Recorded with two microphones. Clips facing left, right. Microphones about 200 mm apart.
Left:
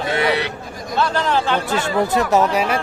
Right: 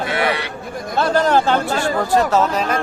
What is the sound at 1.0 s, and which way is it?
Speech, 45° right (ahead or behind).